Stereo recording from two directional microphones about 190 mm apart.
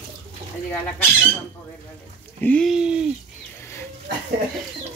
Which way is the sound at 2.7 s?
5° right (ahead or behind).